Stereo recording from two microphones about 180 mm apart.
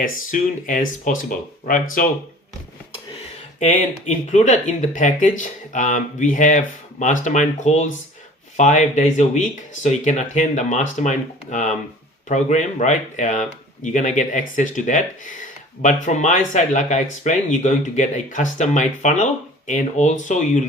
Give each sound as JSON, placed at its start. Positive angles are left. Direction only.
{"t": 0.0, "sound": "speech", "side_deg": 50}
{"t": 3.6, "sound": "speech", "side_deg": 40}